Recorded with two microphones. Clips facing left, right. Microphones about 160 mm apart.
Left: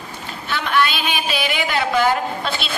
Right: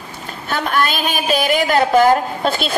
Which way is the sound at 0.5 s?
45° right (ahead or behind).